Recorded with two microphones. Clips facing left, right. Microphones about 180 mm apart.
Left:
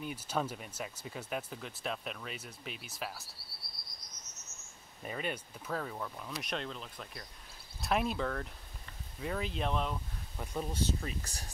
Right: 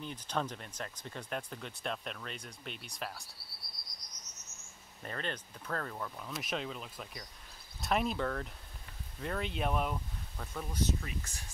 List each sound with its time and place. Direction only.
0.0 s speech: 10° left (ahead or behind)
5.0 s speech: 10° left (ahead or behind); by 10.0 s 10° right (ahead or behind)
10.3 s speech: 15° left (ahead or behind); by 11.5 s 35° left (ahead or behind)